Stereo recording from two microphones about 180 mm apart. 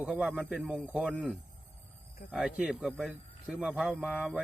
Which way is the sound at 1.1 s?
5° left (ahead or behind).